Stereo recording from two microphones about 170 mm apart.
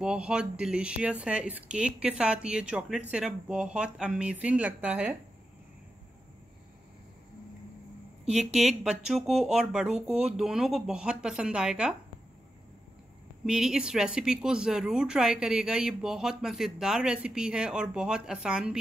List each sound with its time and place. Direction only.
0.0 s speech: 5° right (ahead or behind)
8.5 s a woman's voice: 5° right (ahead or behind)
13.5 s a woman's voice: 5° right (ahead or behind)